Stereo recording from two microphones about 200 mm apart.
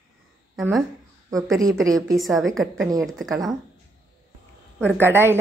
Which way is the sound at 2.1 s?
Centre (ahead or behind).